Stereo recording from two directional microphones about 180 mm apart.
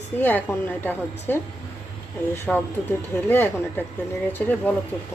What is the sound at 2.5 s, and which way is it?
A woman's voice, 5° left (ahead or behind).